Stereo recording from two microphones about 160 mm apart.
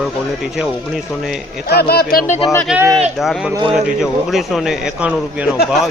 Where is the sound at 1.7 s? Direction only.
80° left; by 2.4 s 65° left (ahead or behind).